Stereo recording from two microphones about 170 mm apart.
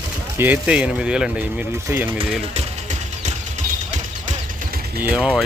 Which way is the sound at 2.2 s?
40° right (ahead or behind).